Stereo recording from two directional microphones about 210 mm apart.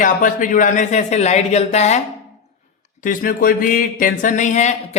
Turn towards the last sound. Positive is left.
turn(degrees=35)  # may be behind; listen again after turning